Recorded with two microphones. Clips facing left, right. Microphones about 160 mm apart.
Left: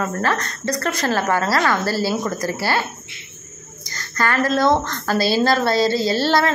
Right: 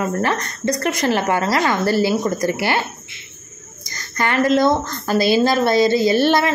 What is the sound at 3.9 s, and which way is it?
Speech, 20° right (ahead or behind).